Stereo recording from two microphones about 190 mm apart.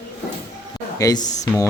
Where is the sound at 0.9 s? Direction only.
20° left (ahead or behind).